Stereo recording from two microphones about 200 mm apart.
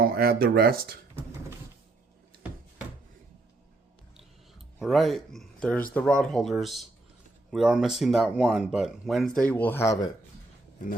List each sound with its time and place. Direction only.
0.0 s speech: 50° right (ahead or behind)
4.2 s speech: centre (ahead or behind); by 10.1 s 15° left (ahead or behind)